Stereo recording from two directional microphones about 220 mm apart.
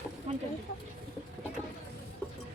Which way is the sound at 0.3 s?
30° right (ahead or behind).